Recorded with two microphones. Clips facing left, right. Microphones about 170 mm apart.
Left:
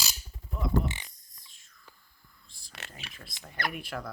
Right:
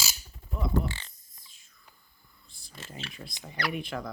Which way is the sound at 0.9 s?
15° left (ahead or behind).